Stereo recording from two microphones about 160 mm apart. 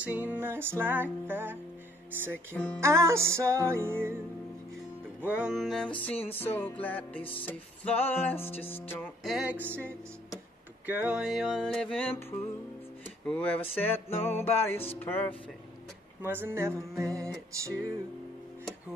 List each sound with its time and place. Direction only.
0.0 s music: 10° right (ahead or behind)
2.8 s music: 15° right (ahead or behind)
5.2 s music: 10° right (ahead or behind); by 9.1 s 10° left (ahead or behind)
9.2 s music: 5° right (ahead or behind)
10.9 s music: 10° right (ahead or behind); by 15.3 s 10° left (ahead or behind)
16.2 s music: 15° right (ahead or behind)